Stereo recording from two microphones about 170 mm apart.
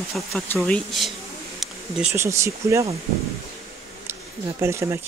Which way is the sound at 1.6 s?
5° right (ahead or behind).